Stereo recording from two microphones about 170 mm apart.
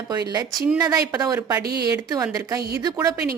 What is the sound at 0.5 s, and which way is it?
Speech, 5° right (ahead or behind).